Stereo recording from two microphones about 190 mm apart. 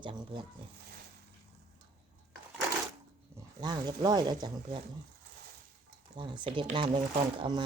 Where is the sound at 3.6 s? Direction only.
20° right (ahead or behind).